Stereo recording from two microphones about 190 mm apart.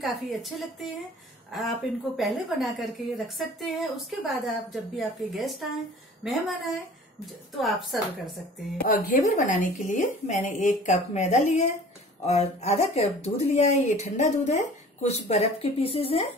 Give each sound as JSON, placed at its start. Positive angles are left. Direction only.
{"t": 0.0, "sound": "speech", "side_deg": 0}
{"t": 8.8, "sound": "speech", "side_deg": 45}